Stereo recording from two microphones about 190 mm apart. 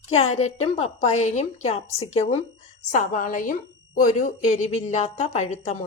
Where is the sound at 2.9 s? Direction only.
45° left (ahead or behind).